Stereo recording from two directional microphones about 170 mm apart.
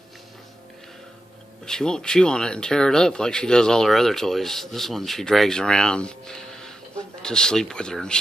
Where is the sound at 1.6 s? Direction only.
5° left (ahead or behind).